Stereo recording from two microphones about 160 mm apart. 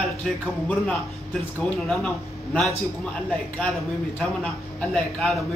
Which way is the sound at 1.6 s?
5° left (ahead or behind).